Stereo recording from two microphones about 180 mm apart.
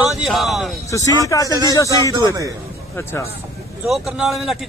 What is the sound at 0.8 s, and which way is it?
Speech, 20° left (ahead or behind).